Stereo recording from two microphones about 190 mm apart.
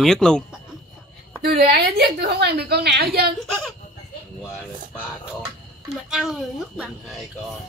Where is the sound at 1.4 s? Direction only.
55° right (ahead or behind).